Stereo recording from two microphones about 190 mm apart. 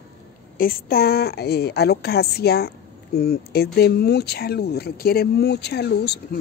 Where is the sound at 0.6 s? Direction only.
50° left (ahead or behind).